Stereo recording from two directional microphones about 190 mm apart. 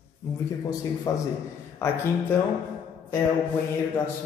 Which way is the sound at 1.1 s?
15° left (ahead or behind).